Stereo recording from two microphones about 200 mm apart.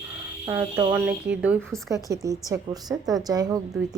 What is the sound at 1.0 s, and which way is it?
A woman's voice, 5° right (ahead or behind).